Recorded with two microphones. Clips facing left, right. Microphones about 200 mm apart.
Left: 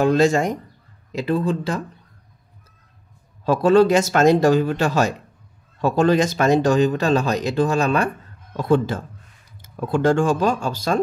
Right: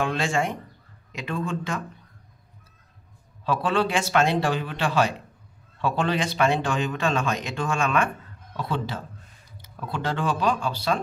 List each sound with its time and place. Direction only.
0.0 s speech: 40° left (ahead or behind)
3.4 s speech: 40° left (ahead or behind)
8.5 s speech: 50° left (ahead or behind)